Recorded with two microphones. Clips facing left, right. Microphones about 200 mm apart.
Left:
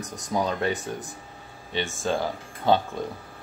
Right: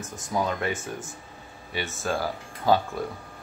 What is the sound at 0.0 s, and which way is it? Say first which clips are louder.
Speech: left 1 dB; 20° left (ahead or behind).